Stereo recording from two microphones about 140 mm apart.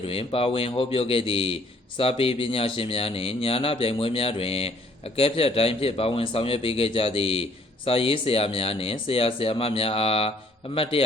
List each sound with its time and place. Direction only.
0.1 s speech: 45° left (ahead or behind)